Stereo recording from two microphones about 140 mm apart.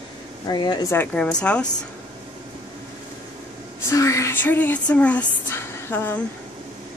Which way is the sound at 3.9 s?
20° left (ahead or behind).